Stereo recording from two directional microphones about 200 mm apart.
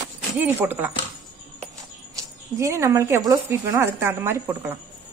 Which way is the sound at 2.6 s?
15° right (ahead or behind).